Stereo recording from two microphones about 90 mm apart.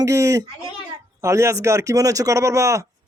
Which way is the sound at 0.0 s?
35° right (ahead or behind).